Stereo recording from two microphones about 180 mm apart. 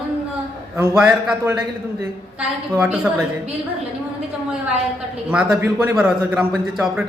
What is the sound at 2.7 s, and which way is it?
Speech, 10° right (ahead or behind).